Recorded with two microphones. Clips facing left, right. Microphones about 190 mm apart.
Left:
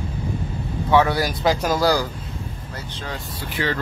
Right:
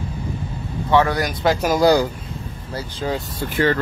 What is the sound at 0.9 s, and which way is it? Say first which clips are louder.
Speech: even; 10° left (ahead or behind).